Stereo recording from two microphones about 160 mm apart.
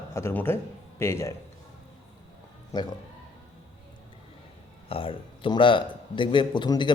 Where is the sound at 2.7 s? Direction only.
25° left (ahead or behind).